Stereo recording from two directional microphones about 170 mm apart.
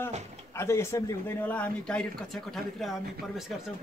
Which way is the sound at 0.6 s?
15° left (ahead or behind).